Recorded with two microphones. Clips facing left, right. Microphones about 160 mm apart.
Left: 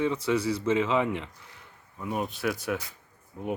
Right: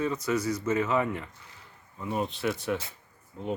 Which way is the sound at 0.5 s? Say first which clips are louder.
Left 2 dB; 25° left (ahead or behind).